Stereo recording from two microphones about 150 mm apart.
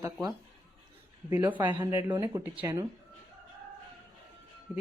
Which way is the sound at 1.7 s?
25° right (ahead or behind).